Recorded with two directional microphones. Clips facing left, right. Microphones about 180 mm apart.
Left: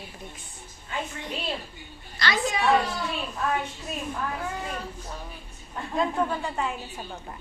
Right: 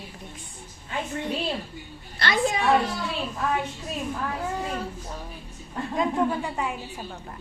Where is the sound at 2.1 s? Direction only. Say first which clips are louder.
Right 1 dB; 55° right (ahead or behind).